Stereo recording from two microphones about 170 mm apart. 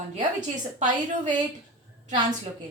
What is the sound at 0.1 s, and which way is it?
Speech, 50° right (ahead or behind).